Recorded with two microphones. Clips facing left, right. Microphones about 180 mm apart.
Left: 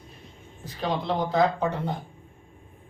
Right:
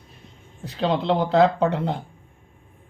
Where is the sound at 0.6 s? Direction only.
70° right (ahead or behind).